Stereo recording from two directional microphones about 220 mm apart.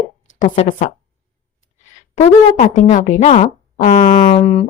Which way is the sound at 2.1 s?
35° left (ahead or behind).